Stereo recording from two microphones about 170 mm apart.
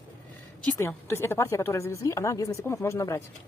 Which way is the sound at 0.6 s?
15° left (ahead or behind).